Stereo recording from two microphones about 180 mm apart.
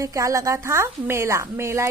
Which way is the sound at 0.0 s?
15° right (ahead or behind).